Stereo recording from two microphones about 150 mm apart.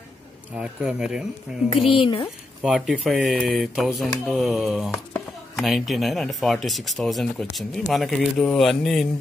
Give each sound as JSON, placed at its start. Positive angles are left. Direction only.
{"t": 0.6, "sound": "speech", "side_deg": -5}
{"t": 2.0, "sound": "speech", "side_deg": 30}
{"t": 2.6, "sound": "speech", "side_deg": -5}